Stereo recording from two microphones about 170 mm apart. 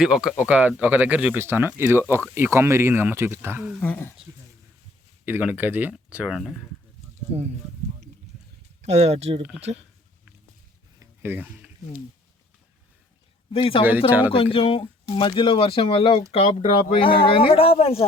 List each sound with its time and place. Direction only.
0.0 s speech: 5° right (ahead or behind)
3.7 s speech: 10° left (ahead or behind)
5.2 s speech: 10° right (ahead or behind)
7.3 s speech: 35° right (ahead or behind)
8.8 s speech: 40° right (ahead or behind)
11.0 s a sound: 15° right (ahead or behind)
13.5 s speech: 35° left (ahead or behind)
14.1 s speech: 10° right (ahead or behind)
14.3 s speech: 35° left (ahead or behind)